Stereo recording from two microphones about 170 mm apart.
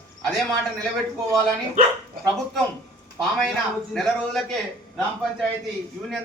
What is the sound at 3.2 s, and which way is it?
A man's voice, centre (ahead or behind).